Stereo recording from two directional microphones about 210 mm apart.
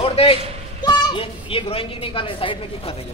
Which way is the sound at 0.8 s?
20° left (ahead or behind).